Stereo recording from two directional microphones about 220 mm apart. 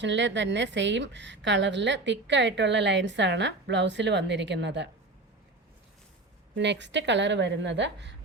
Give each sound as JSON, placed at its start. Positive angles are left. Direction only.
{"t": 0.0, "sound": "a woman's voice", "side_deg": -55}
{"t": 6.6, "sound": "a woman's voice", "side_deg": -55}